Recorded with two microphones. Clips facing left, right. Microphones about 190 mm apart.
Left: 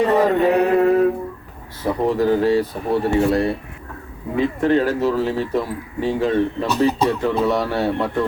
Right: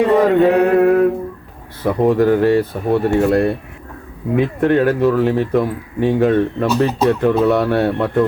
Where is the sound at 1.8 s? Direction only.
60° right (ahead or behind).